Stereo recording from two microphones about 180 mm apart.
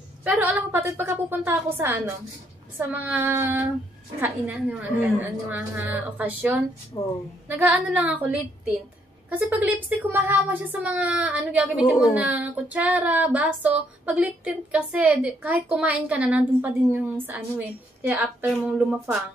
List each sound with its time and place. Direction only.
0.2 s speech: 10° right (ahead or behind)
6.9 s a woman's voice: 20° left (ahead or behind)
7.4 s speech: 10° right (ahead or behind)